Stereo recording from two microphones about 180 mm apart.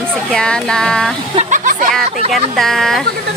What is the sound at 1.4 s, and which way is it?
Speech, 45° right (ahead or behind).